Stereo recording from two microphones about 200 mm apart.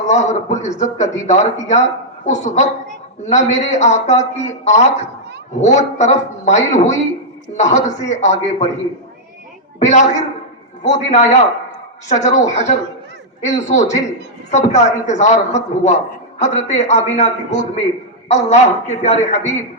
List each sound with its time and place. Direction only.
0.1 s a man's voice: 35° left (ahead or behind)
9.8 s a man's voice: 35° left (ahead or behind)